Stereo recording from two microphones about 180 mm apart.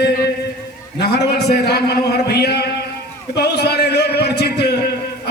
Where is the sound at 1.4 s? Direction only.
65° left (ahead or behind).